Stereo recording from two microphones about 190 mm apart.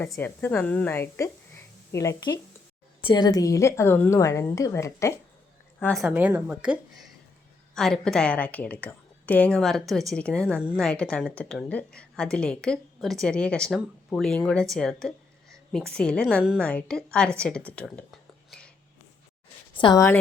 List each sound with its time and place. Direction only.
0.1 s a woman's voice: 10° left (ahead or behind)
5.8 s speech: centre (ahead or behind)
6.1 s a woman's voice: 10° right (ahead or behind)
19.7 s a woman's voice: 25° left (ahead or behind)